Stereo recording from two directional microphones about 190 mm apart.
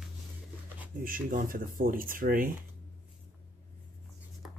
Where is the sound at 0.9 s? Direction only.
45° right (ahead or behind).